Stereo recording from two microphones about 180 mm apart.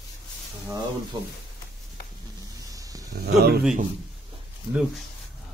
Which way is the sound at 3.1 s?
60° right (ahead or behind).